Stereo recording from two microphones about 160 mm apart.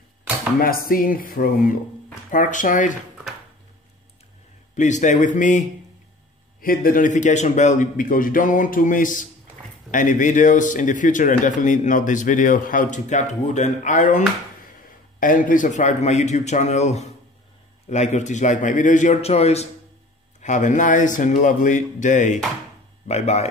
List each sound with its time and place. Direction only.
0.6 s a man's voice: 65° left (ahead or behind)
4.7 s speech: 50° left (ahead or behind)
6.6 s a man's voice: 65° left (ahead or behind); by 23.5 s 45° left (ahead or behind)